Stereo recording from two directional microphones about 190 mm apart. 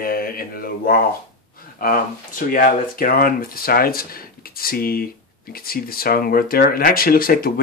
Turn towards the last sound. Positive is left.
turn(degrees=50)  # may be behind; listen again after turning